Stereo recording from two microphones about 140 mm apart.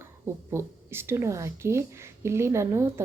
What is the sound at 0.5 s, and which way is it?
Speech, 20° right (ahead or behind).